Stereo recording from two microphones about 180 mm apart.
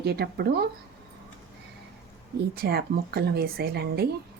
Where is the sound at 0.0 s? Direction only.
60° right (ahead or behind).